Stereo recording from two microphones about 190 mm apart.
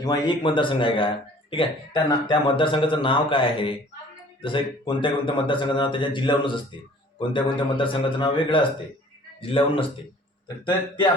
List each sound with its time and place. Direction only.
0.0 s speech: 20° left (ahead or behind)